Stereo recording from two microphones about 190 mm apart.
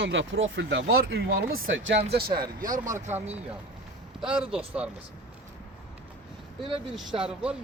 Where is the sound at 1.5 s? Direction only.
90° right.